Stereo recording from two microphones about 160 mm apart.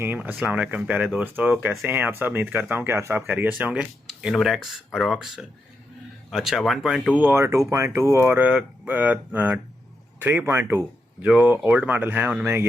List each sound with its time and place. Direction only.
0.0 s speech: 10° right (ahead or behind)
7.3 s speech: 15° right (ahead or behind)